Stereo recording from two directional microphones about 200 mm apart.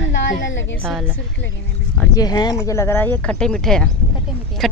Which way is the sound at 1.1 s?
65° left (ahead or behind).